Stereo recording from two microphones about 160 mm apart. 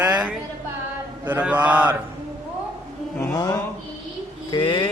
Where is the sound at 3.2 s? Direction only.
25° left (ahead or behind).